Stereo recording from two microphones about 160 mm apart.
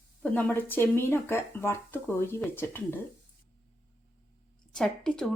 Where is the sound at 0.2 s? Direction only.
10° left (ahead or behind).